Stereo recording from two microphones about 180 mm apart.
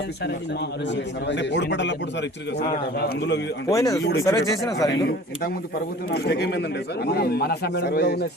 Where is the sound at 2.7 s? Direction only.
60° left (ahead or behind).